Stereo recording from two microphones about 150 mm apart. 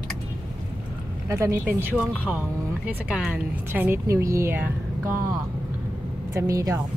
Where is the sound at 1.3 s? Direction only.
20° right (ahead or behind).